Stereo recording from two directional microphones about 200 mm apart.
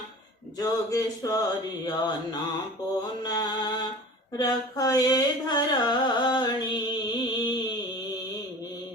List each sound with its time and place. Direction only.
0.6 s a sound: 20° left (ahead or behind)
3.2 s mantra: 20° left (ahead or behind)
4.4 s carnatic music: 20° left (ahead or behind)